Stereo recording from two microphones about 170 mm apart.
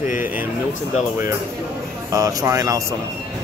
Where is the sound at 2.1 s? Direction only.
20° right (ahead or behind).